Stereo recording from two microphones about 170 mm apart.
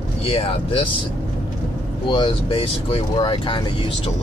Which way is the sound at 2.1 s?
30° left (ahead or behind).